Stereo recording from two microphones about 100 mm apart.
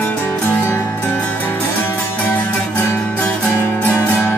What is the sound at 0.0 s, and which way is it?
Music, 20° left (ahead or behind).